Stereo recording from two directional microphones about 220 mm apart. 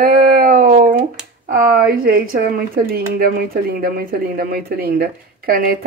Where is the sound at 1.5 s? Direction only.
45° right (ahead or behind).